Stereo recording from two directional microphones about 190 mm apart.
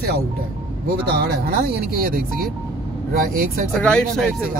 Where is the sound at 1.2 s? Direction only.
55° right (ahead or behind).